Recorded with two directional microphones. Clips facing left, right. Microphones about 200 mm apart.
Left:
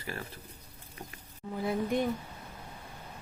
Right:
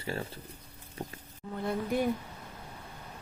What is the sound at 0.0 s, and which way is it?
Speech, 25° right (ahead or behind).